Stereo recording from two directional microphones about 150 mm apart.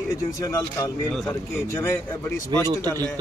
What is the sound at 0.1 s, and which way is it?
Speech, 20° left (ahead or behind).